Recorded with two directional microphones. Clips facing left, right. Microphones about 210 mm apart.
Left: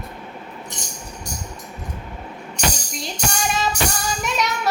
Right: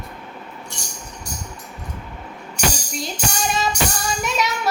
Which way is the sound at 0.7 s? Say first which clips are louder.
Left 1 dB; 20° left (ahead or behind).